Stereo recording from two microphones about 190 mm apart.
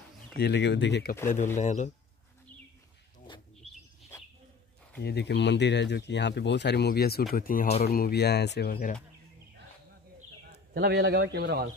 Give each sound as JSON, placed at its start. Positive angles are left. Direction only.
{"t": 0.4, "sound": "speech", "side_deg": 65}
{"t": 1.6, "sound": "speech", "side_deg": 40}
{"t": 5.0, "sound": "speech", "side_deg": 60}
{"t": 10.7, "sound": "a man's voice", "side_deg": -60}